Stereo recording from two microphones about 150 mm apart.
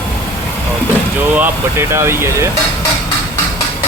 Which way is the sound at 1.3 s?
15° right (ahead or behind).